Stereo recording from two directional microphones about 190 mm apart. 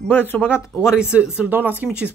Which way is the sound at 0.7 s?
5° right (ahead or behind).